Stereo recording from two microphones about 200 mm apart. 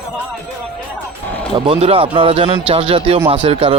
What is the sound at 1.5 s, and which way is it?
Speech, 25° right (ahead or behind).